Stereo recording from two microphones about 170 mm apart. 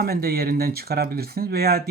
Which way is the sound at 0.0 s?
65° right (ahead or behind).